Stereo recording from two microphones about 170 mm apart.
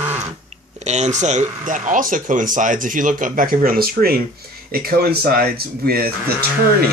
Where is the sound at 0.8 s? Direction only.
45° right (ahead or behind); by 6.0 s 60° right (ahead or behind).